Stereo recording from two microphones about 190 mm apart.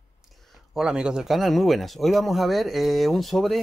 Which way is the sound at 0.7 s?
5° right (ahead or behind).